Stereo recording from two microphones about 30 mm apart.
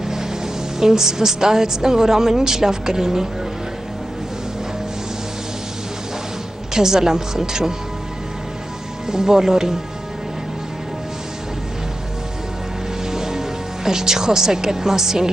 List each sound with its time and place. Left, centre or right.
0.0 s a woman's voice: centre
6.7 s speech: centre
9.0 s speech: centre
13.0 s speech: centre